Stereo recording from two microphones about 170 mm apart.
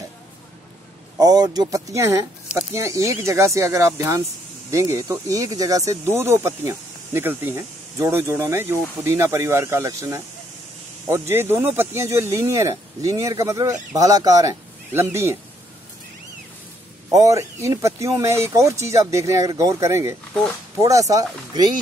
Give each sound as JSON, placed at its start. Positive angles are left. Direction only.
{"t": 1.2, "sound": "speech", "side_deg": -20}
{"t": 17.1, "sound": "speech", "side_deg": -20}
{"t": 20.3, "sound": "speech", "side_deg": 5}
{"t": 20.8, "sound": "speech", "side_deg": -20}